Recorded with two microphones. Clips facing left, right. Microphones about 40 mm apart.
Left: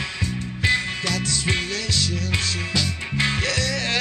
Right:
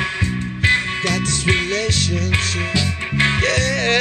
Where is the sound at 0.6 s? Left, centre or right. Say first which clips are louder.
Right 5 dB; right.